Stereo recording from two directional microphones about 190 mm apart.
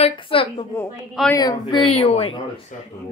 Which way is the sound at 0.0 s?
30° left (ahead or behind).